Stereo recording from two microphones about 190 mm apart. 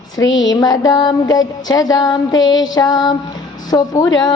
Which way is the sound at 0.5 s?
20° left (ahead or behind).